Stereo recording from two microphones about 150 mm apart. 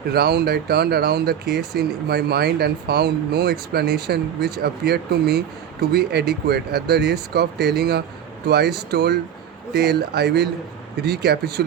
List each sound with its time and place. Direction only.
0.1 s speech: 90° right